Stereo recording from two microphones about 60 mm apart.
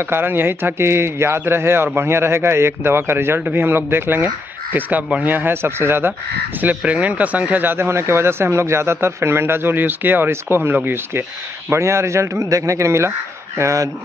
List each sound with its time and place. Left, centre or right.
0.0 s speech: right
6.6 s speech: right
11.7 s speech: right